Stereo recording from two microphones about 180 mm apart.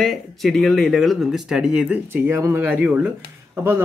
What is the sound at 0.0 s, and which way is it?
Speech, centre (ahead or behind).